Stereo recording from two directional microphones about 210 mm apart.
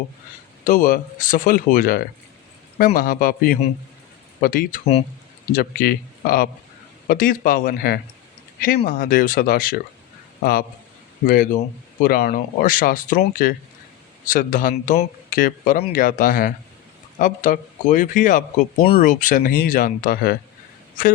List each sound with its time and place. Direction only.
0.6 s speech: 40° left (ahead or behind)